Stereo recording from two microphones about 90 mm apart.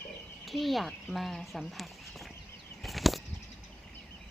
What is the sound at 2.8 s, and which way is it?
Bird flight, centre (ahead or behind).